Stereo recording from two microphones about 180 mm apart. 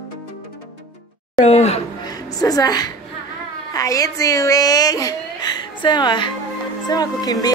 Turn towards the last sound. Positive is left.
turn(degrees=20)  # may be behind; listen again after turning